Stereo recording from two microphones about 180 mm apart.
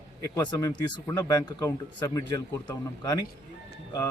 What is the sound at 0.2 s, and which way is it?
A man's voice, 20° left (ahead or behind).